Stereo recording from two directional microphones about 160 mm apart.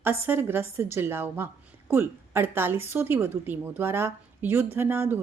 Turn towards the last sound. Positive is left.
turn(degrees=-15)  # may be behind; listen again after turning